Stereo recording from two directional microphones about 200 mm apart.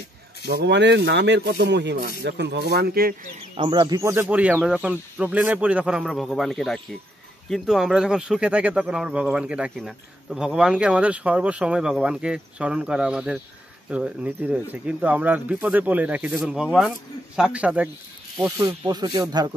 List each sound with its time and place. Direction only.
0.5 s speech: 60° right (ahead or behind)
3.5 s speech: 25° right (ahead or behind); by 17.8 s 5° right (ahead or behind)
18.6 s speech: 20° right (ahead or behind)